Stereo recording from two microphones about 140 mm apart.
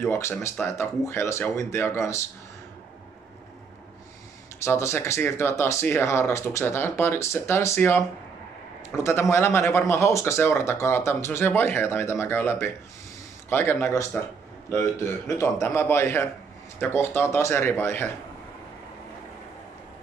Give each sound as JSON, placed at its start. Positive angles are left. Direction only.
{"t": 0.0, "sound": "speech", "side_deg": 20}
{"t": 4.6, "sound": "speech", "side_deg": 20}